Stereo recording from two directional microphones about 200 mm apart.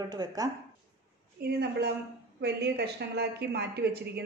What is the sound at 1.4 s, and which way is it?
A woman's voice, 55° right (ahead or behind).